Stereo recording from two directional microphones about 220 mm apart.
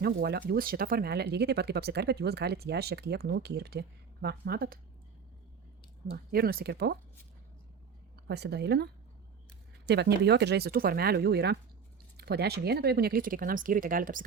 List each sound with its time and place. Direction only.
0.0 s speech: 45° right (ahead or behind)
6.3 s speech: 45° right (ahead or behind)
8.3 s speech: 50° right (ahead or behind)